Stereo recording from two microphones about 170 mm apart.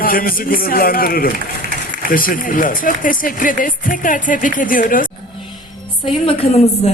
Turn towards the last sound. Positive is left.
turn(degrees=35)  # may be behind; listen again after turning